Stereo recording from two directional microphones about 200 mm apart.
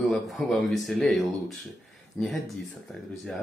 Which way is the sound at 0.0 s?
Centre (ahead or behind).